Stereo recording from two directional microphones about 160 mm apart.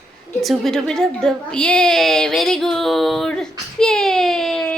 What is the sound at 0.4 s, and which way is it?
A woman's voice, centre (ahead or behind).